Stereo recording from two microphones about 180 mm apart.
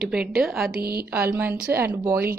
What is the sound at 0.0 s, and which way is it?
Speech, 5° right (ahead or behind).